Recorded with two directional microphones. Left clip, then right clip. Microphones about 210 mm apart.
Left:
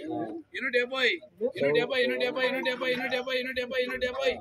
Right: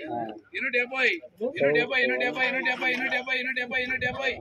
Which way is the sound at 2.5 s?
35° left (ahead or behind).